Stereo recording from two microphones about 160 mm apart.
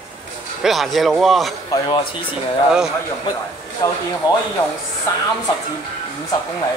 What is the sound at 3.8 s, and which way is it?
Speech, 20° left (ahead or behind).